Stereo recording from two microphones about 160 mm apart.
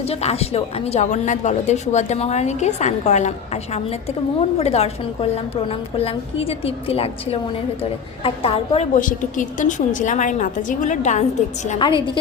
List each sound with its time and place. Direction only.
0.0 s a woman's voice: 40° left (ahead or behind)
9.0 s a woman's voice: 55° left (ahead or behind)
11.8 s a woman's voice: 30° left (ahead or behind)